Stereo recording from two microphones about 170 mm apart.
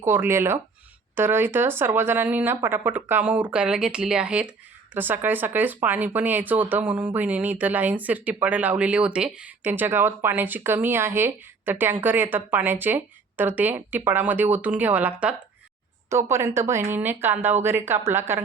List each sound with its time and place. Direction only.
0.0 s speech: 15° right (ahead or behind)